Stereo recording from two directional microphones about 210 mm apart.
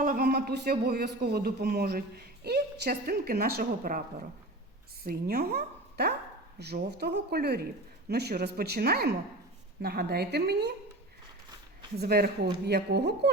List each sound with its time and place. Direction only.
0.0 s speech: 45° right (ahead or behind)
5.0 s speech: 45° right (ahead or behind)
11.9 s speech: 50° right (ahead or behind)